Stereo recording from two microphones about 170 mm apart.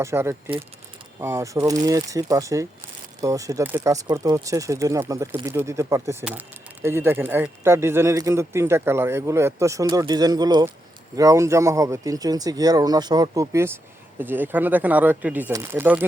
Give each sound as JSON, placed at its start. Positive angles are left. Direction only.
{"t": 0.0, "sound": "a man's voice", "side_deg": -15}